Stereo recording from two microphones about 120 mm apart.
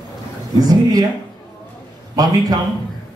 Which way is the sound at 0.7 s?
30° right (ahead or behind).